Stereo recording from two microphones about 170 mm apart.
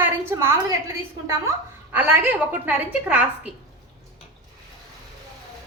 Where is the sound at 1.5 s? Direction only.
10° right (ahead or behind).